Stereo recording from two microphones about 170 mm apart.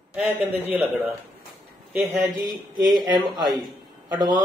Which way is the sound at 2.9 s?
25° right (ahead or behind).